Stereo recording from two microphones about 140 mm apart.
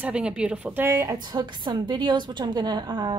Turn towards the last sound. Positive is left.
turn(degrees=-30)  # may be behind; listen again after turning